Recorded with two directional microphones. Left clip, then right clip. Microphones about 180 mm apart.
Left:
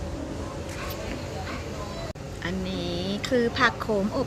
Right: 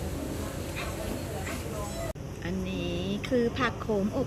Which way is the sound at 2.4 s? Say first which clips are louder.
Left 4 dB; 15° left (ahead or behind).